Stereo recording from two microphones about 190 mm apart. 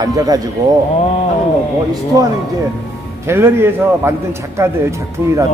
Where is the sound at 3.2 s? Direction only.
15° right (ahead or behind).